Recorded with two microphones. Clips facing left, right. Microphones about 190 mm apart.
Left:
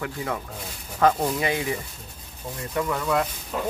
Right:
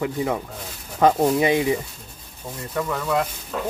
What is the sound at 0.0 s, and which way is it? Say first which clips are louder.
Speech: right 6 dB; 20° right (ahead or behind).